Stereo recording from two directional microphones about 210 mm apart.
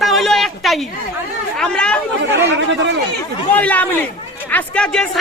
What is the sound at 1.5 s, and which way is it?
Speech, 5° left (ahead or behind).